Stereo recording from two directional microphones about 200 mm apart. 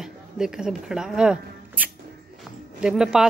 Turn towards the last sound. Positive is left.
turn(degrees=0)  # may be behind; listen again after turning